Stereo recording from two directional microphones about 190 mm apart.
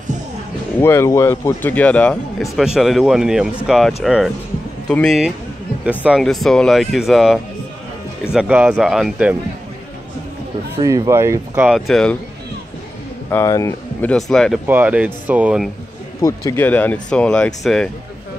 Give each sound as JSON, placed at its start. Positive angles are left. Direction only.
{"t": 0.7, "sound": "a man's voice", "side_deg": 10}
{"t": 10.8, "sound": "speech", "side_deg": -20}
{"t": 13.3, "sound": "speech", "side_deg": 15}
{"t": 14.1, "sound": "a man's voice", "side_deg": 0}
{"t": 14.7, "sound": "speech", "side_deg": -10}
{"t": 16.2, "sound": "a man's voice", "side_deg": 15}